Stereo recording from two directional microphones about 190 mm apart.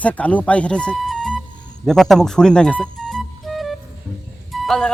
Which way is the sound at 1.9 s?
Centre (ahead or behind).